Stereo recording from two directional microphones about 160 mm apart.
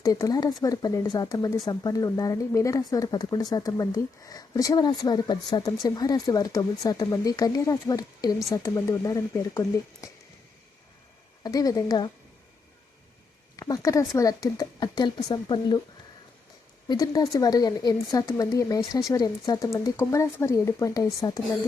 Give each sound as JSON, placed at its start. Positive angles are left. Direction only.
{"t": 0.0, "sound": "speech", "side_deg": 20}
{"t": 11.4, "sound": "speech", "side_deg": 25}
{"t": 13.6, "sound": "speech", "side_deg": 25}
{"t": 16.9, "sound": "speech", "side_deg": 25}